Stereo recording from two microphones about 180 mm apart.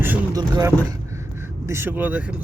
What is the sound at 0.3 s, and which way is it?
Speech, 20° right (ahead or behind).